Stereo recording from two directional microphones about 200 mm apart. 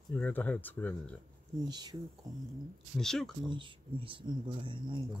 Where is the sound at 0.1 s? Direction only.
10° left (ahead or behind).